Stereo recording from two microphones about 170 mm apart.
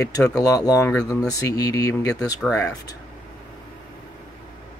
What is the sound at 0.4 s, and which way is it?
Speech, 20° left (ahead or behind).